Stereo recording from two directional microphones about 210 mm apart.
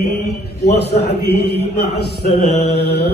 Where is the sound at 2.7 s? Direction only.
50° left (ahead or behind).